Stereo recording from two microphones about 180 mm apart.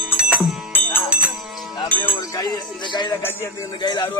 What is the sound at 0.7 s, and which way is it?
Music, 10° left (ahead or behind).